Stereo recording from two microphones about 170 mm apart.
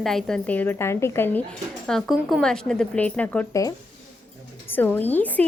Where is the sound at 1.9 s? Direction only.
Centre (ahead or behind).